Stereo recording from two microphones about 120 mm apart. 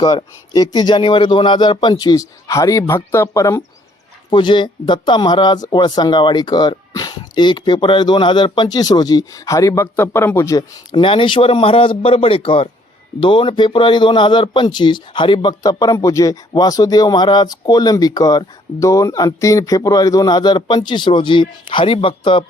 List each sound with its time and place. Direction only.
0.0 s speech: 35° left (ahead or behind)
4.3 s speech: 40° left (ahead or behind); by 10.6 s 25° left (ahead or behind)
10.9 s speech: 45° left (ahead or behind)